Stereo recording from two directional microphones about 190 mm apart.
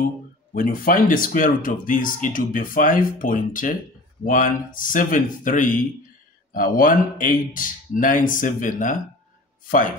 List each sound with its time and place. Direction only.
0.6 s speech: 45° left (ahead or behind)